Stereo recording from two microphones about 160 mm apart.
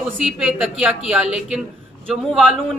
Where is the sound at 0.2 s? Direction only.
5° right (ahead or behind).